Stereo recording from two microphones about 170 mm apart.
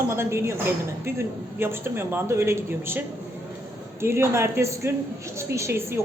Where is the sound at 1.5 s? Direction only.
15° right (ahead or behind).